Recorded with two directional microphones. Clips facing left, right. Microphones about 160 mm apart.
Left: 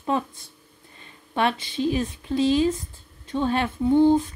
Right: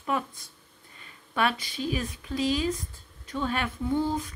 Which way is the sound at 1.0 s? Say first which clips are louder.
Left 3 dB; 25° left (ahead or behind).